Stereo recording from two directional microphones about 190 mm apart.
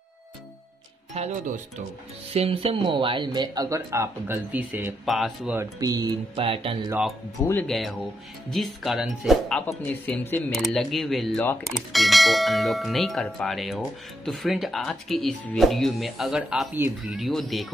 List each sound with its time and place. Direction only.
1.1 s speech: 35° right (ahead or behind)
2.3 s speech: 30° right (ahead or behind); by 5.6 s centre (ahead or behind)
5.6 s speech: 20° right (ahead or behind)
6.9 s speech: 5° right (ahead or behind)